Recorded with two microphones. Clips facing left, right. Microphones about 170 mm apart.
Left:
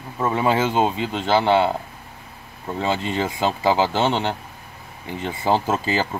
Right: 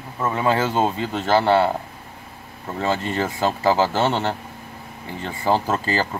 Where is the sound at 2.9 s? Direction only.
15° left (ahead or behind).